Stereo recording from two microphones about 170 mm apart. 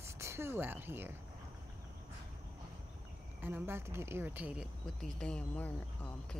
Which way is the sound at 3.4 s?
10° right (ahead or behind).